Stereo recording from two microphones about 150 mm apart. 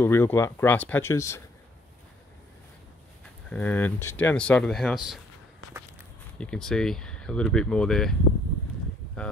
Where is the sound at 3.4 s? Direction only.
10° left (ahead or behind).